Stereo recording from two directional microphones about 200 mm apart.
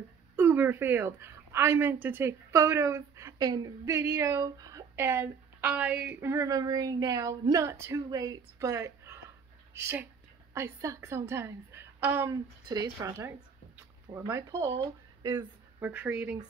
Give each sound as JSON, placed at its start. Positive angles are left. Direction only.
{"t": 0.4, "sound": "a woman's voice", "side_deg": -10}
{"t": 15.8, "sound": "a woman's voice", "side_deg": -5}